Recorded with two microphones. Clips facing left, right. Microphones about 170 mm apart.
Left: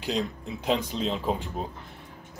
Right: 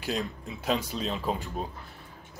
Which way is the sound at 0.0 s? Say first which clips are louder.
Left 3 dB; 15° left (ahead or behind).